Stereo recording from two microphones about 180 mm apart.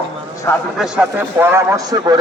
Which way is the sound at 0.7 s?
5° right (ahead or behind).